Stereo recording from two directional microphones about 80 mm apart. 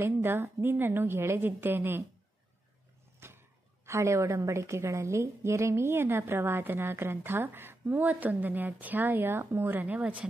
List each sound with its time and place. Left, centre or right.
0.0 s a woman's voice: right
3.2 s a sound: right
3.8 s a woman's voice: right; by 10.2 s centre